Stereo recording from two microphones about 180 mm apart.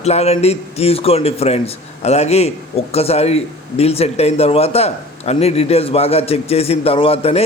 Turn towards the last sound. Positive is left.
turn(degrees=35)  # may be behind; listen again after turning